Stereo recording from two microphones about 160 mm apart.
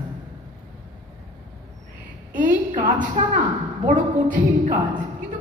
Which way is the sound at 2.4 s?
55° right (ahead or behind).